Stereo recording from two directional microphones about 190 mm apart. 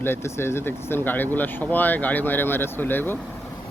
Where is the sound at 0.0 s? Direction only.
15° left (ahead or behind).